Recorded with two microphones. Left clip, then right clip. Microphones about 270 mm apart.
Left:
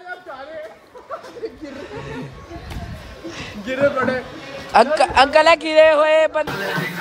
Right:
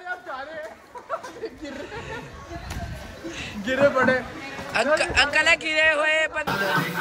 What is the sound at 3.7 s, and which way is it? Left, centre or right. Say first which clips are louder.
Speech: left 1 dB; right.